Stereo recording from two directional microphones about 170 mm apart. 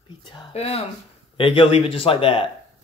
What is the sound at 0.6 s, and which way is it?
Speech, 35° left (ahead or behind).